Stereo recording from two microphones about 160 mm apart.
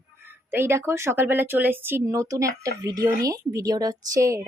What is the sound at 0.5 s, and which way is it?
Speech, 15° right (ahead or behind).